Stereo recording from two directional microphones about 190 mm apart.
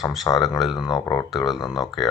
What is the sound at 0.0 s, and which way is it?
Speech, centre (ahead or behind).